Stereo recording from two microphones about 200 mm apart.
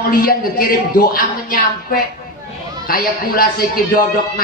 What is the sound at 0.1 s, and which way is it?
A man's voice, 45° left (ahead or behind).